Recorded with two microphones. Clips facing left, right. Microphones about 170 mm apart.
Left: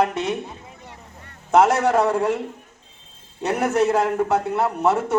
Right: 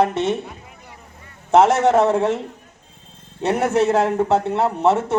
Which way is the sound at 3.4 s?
25° right (ahead or behind).